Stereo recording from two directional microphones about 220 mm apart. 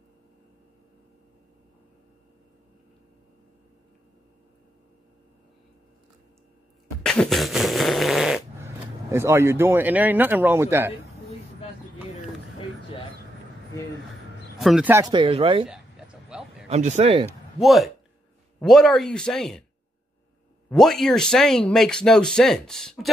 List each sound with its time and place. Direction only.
7.0 s fart: 5° left (ahead or behind)
9.1 s speech: 10° right (ahead or behind)
14.6 s speech: 5° right (ahead or behind); by 15.6 s 25° right (ahead or behind)
15.6 s a sound: 5° right (ahead or behind)
16.6 s speech: 30° right (ahead or behind)
17.6 s speech: centre (ahead or behind)
20.7 s speech: centre (ahead or behind)